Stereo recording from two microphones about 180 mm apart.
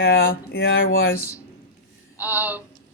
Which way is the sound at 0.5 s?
80° left.